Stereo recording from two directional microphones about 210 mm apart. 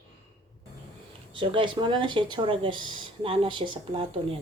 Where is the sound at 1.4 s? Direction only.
25° right (ahead or behind).